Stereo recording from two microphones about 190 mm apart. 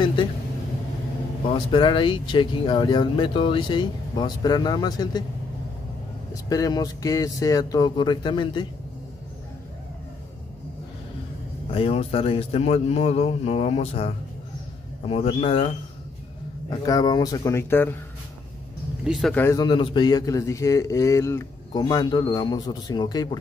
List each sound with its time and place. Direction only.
0.0 s vehicle: 25° left (ahead or behind)
1.5 s a man's voice: 25° left (ahead or behind)
6.3 s a man's voice: 20° left (ahead or behind)
11.7 s a man's voice: 30° left (ahead or behind); by 17.9 s 10° left (ahead or behind)
19.0 s speech: centre (ahead or behind)
19.4 s a man's voice: 20° left (ahead or behind)